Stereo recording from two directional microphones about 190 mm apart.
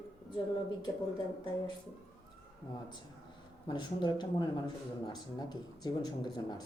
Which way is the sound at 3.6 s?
25° left (ahead or behind).